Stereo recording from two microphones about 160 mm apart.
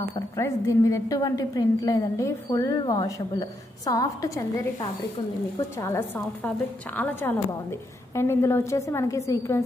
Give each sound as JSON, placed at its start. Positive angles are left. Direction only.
{"t": 0.1, "sound": "a woman's voice", "side_deg": 20}